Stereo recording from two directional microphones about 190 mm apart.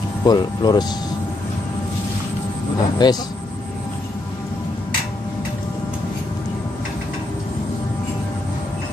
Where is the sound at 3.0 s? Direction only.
20° left (ahead or behind).